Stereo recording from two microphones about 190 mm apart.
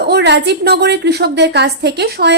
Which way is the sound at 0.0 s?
60° right (ahead or behind).